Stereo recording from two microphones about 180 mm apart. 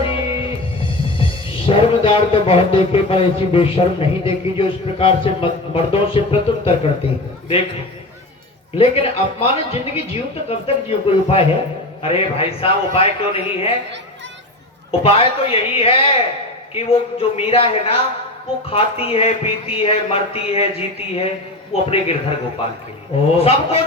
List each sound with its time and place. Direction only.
0.0 s music: 30° left (ahead or behind)
4.5 s a woman's voice: 30° left (ahead or behind)
8.8 s a woman's voice: 30° left (ahead or behind)
15.0 s a woman's voice: 30° left (ahead or behind)
23.4 s a woman's voice: 35° left (ahead or behind)